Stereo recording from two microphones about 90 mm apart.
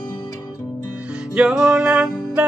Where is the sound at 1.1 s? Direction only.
10° right (ahead or behind).